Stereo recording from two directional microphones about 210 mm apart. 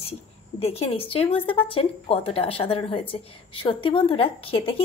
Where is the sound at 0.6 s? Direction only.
30° left (ahead or behind).